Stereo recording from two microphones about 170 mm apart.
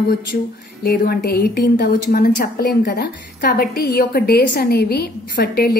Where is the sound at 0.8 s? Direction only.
65° left (ahead or behind).